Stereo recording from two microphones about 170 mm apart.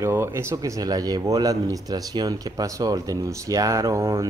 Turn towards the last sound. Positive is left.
turn(degrees=-15)  # may be behind; listen again after turning